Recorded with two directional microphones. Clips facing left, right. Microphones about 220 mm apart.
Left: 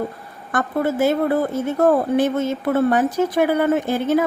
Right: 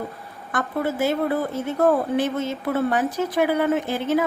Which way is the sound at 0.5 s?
45° left (ahead or behind).